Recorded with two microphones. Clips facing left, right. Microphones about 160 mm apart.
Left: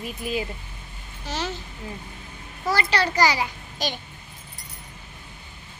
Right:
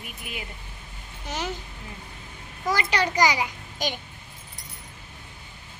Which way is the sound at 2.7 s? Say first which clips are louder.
Left 1 dB; 15° right (ahead or behind).